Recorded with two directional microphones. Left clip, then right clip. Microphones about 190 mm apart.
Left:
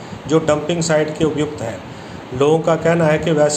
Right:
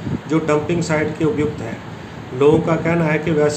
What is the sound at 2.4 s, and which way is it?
Speech, 35° left (ahead or behind).